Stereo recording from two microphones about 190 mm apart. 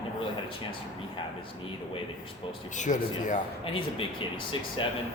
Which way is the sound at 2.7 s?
40° left (ahead or behind).